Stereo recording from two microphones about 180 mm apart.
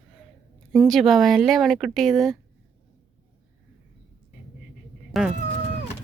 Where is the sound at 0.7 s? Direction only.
Centre (ahead or behind).